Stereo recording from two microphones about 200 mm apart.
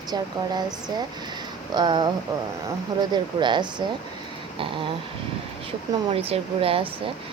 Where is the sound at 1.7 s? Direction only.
20° right (ahead or behind).